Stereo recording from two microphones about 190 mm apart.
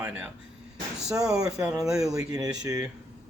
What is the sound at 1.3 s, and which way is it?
Speech, 20° right (ahead or behind).